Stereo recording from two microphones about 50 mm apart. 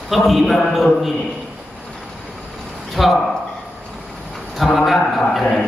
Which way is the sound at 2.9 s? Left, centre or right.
Centre.